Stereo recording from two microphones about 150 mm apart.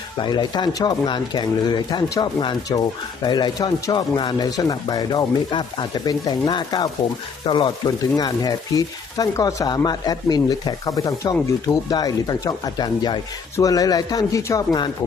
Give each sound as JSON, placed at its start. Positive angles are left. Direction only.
{"t": 0.2, "sound": "speech", "side_deg": 30}